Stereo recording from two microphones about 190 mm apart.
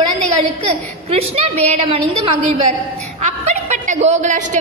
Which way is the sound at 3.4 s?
35° right (ahead or behind).